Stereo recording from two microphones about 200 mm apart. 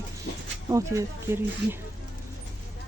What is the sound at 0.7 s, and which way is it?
Speech, 15° right (ahead or behind).